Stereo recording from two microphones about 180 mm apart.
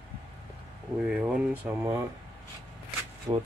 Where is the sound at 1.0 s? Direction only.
5° right (ahead or behind).